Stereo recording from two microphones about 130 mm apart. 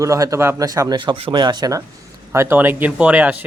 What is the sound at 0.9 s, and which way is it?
Speech, 40° right (ahead or behind).